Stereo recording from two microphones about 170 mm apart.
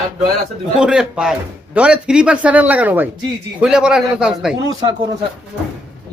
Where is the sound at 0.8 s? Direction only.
5° right (ahead or behind).